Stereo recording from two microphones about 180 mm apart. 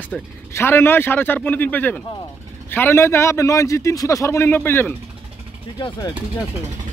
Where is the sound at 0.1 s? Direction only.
15° left (ahead or behind).